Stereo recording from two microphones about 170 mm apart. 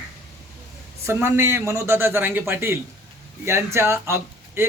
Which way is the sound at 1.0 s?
15° right (ahead or behind).